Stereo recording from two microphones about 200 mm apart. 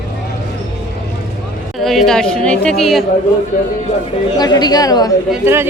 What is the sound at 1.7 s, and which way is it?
A woman's voice, centre (ahead or behind).